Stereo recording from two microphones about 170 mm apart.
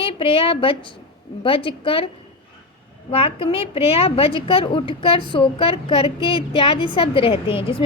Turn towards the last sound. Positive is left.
turn(degrees=30)  # may be behind; listen again after turning